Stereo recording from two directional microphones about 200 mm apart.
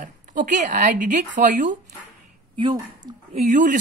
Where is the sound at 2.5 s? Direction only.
20° right (ahead or behind).